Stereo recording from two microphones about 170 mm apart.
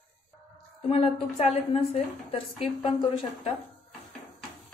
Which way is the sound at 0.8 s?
35° left (ahead or behind).